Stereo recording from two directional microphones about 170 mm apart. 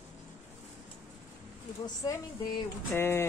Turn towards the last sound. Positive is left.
turn(degrees=15)  # may be behind; listen again after turning